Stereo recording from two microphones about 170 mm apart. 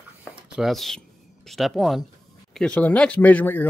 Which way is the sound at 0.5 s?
Centre (ahead or behind).